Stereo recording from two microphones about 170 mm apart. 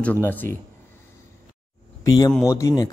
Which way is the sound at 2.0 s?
20° left (ahead or behind).